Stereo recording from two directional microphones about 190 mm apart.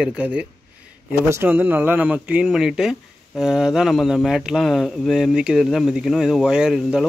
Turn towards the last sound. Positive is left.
turn(degrees=-5)  # may be behind; listen again after turning